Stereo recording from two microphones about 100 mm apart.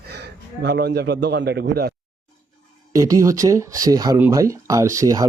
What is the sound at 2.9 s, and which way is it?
Speech, 35° right (ahead or behind).